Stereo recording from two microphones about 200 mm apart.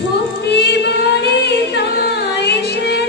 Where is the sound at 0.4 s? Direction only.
55° left (ahead or behind).